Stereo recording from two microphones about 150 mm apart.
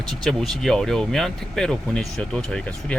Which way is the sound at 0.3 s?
Centre (ahead or behind).